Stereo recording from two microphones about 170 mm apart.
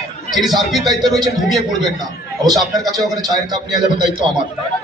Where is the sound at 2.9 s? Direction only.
25° right (ahead or behind).